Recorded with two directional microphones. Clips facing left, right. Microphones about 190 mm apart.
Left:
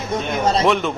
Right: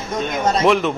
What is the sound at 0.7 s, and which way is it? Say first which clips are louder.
Speech: right 2 dB; centre (ahead or behind).